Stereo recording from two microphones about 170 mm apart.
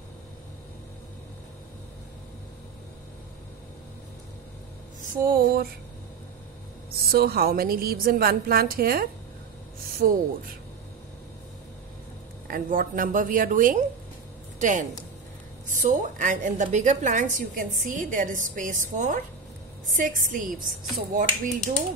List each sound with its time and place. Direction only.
5.2 s a woman's voice: 60° right (ahead or behind)
7.1 s a woman's voice: 65° right (ahead or behind)
12.4 s a woman's voice: 55° right (ahead or behind)